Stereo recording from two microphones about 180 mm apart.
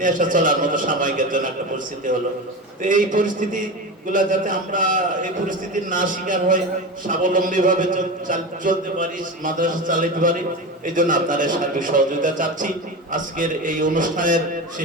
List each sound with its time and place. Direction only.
0.0 s a man's voice: 45° right (ahead or behind)